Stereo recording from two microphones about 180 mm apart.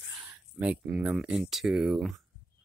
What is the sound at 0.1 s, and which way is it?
Speech, 10° right (ahead or behind).